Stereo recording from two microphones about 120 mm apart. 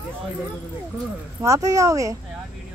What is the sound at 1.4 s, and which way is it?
Speech, 25° right (ahead or behind).